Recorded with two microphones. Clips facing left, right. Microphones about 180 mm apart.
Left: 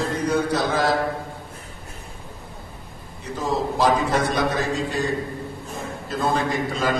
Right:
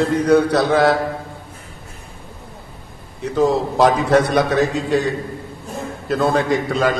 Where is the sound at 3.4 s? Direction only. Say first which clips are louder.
Right 7 dB; 70° right (ahead or behind).